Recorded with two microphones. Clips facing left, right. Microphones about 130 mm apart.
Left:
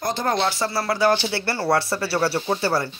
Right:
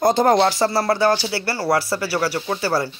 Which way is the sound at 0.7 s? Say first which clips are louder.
Right 3 dB; 30° right (ahead or behind).